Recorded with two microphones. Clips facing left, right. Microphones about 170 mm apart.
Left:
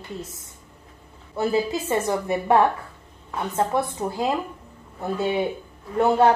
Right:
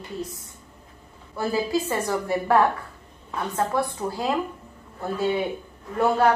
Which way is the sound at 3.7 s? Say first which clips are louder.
Even; 25° left (ahead or behind).